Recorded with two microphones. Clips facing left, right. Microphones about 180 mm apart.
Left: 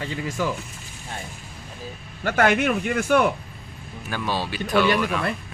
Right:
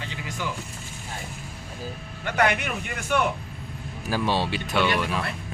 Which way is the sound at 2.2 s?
50° left (ahead or behind).